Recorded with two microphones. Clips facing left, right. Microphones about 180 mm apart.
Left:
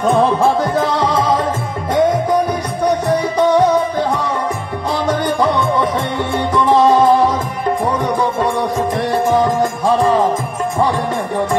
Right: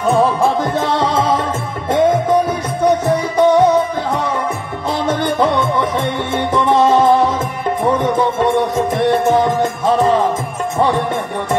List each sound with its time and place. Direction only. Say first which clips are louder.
0.4 s music: left 1 dB; 25° right (ahead or behind)
5.0 s music: even; 25° right (ahead or behind)